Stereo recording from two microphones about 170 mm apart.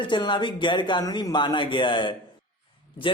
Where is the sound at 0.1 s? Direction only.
25° left (ahead or behind).